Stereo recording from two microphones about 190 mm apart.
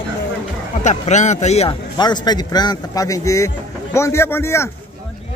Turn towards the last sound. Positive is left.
turn(degrees=15)  # may be behind; listen again after turning